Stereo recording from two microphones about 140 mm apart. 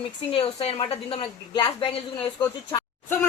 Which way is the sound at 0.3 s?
40° left (ahead or behind).